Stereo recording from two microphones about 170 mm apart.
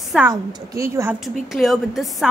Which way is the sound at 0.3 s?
20° right (ahead or behind).